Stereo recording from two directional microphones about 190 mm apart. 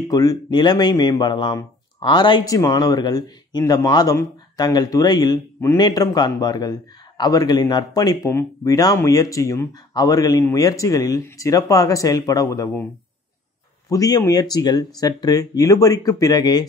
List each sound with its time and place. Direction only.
0.1 s speech: 20° left (ahead or behind)
13.8 s speech: 20° left (ahead or behind)